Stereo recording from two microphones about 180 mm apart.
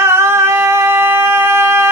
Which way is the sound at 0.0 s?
15° right (ahead or behind).